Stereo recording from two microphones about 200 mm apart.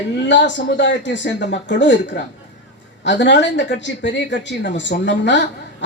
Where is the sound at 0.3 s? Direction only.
65° left (ahead or behind).